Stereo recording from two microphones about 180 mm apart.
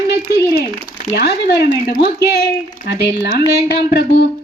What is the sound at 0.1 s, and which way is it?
A child's voice, 65° left (ahead or behind).